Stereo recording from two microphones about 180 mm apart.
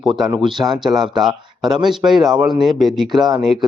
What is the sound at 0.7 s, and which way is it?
Speech, centre (ahead or behind).